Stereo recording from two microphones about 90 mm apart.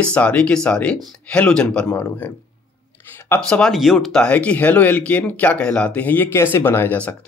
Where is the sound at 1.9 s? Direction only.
30° left (ahead or behind).